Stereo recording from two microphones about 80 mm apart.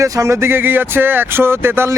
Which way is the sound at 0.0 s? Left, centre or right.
Right.